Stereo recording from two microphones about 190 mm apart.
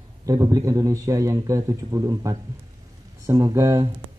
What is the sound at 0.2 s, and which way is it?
Speech, 20° right (ahead or behind).